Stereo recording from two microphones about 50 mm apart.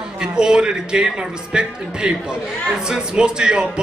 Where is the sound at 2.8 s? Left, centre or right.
Centre.